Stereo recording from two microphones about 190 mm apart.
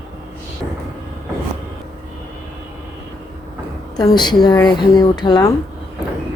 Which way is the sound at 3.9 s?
20° left (ahead or behind).